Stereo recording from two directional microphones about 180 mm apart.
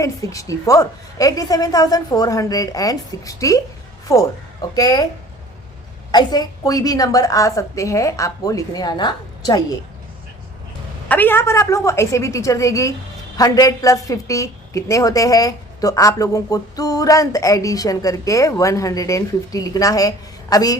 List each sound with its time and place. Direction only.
0.0 s a woman's voice: 20° left (ahead or behind)
6.1 s a woman's voice: 25° left (ahead or behind)
11.1 s a woman's voice: 10° left (ahead or behind)